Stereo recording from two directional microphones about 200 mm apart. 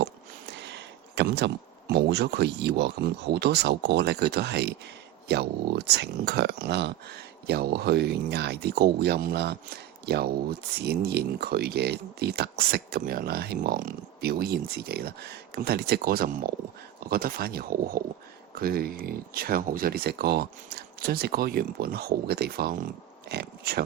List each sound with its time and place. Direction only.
0.6 s speech: 60° right (ahead or behind)